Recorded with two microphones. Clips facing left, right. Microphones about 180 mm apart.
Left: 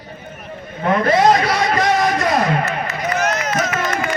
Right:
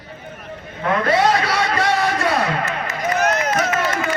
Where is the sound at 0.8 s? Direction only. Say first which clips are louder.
Left 3 dB; 35° left (ahead or behind).